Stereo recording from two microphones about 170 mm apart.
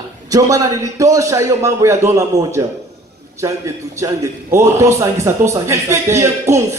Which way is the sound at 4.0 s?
15° right (ahead or behind).